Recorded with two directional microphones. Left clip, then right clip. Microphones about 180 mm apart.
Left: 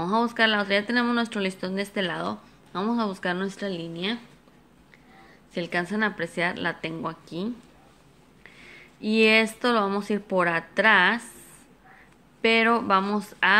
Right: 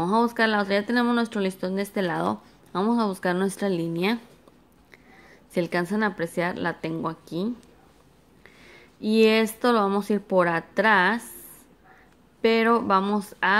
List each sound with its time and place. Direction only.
0.0 s speech: 20° right (ahead or behind); by 4.2 s 40° right (ahead or behind)
5.5 s speech: 30° right (ahead or behind)
8.5 s speech: 20° right (ahead or behind)
12.4 s a woman's voice: 20° right (ahead or behind)